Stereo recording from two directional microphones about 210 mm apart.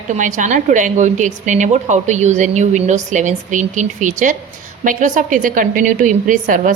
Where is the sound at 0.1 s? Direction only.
35° right (ahead or behind).